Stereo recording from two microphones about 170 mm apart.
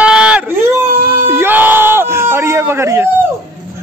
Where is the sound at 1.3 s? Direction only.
10° right (ahead or behind).